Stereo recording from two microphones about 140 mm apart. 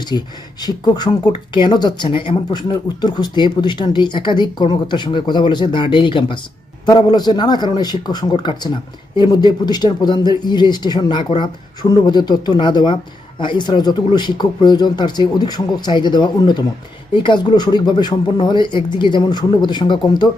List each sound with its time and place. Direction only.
0.0 s a man's voice: 30° left (ahead or behind)